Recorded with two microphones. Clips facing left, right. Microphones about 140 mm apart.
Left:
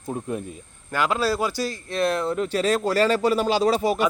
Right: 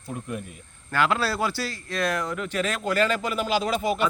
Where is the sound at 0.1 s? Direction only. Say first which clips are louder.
Left 5 dB; 30° left (ahead or behind).